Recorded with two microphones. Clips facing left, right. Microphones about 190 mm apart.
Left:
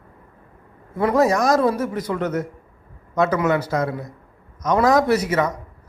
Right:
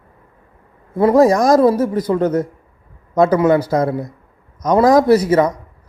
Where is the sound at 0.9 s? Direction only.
30° right (ahead or behind).